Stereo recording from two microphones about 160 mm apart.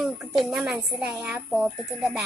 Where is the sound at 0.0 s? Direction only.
Centre (ahead or behind).